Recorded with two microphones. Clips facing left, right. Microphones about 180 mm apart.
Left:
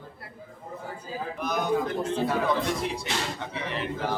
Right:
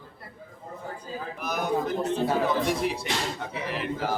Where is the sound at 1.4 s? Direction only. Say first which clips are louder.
Left 3 dB; 5° right (ahead or behind).